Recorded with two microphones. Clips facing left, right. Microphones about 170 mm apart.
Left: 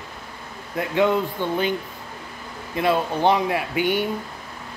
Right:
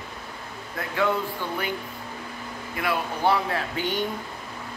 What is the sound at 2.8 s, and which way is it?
A man's voice, 25° left (ahead or behind).